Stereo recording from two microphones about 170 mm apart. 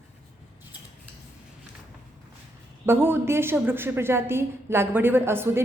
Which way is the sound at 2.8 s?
15° right (ahead or behind).